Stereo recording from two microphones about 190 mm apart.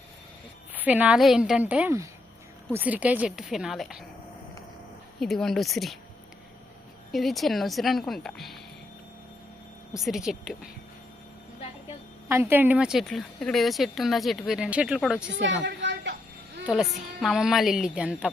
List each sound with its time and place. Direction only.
0.7 s a woman's voice: 10° right (ahead or behind)
5.2 s speech: centre (ahead or behind)
7.1 s speech: centre (ahead or behind)
9.9 s speech: centre (ahead or behind)
12.3 s speech: 10° right (ahead or behind)
15.3 s a woman's voice: 70° right (ahead or behind)
15.6 s a sound: 70° right (ahead or behind)
16.6 s speech: 5° right (ahead or behind)